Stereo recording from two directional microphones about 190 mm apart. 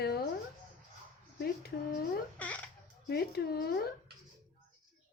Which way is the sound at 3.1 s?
55° left (ahead or behind).